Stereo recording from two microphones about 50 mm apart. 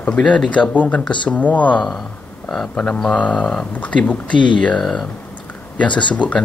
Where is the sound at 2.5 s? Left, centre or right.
Centre.